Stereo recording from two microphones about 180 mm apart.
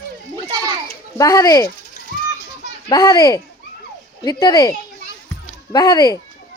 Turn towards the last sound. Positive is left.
turn(degrees=20)  # may be behind; listen again after turning